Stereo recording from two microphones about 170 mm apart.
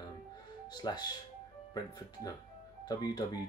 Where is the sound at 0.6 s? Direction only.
25° left (ahead or behind).